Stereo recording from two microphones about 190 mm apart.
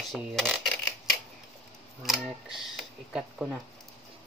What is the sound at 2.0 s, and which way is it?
Speech, centre (ahead or behind).